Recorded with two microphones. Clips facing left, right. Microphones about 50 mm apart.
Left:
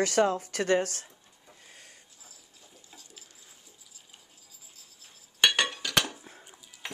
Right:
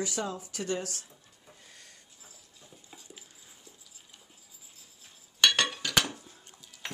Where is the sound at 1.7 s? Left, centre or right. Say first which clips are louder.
Left 2 dB; left.